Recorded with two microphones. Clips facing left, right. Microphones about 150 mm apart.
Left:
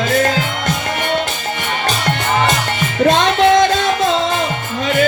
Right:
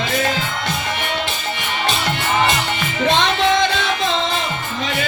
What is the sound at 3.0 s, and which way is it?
Music, 45° left (ahead or behind).